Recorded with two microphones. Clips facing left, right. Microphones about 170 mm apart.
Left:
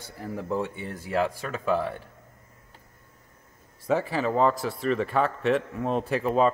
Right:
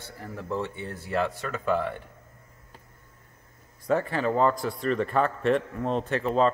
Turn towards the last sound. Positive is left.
turn(degrees=10)  # may be behind; listen again after turning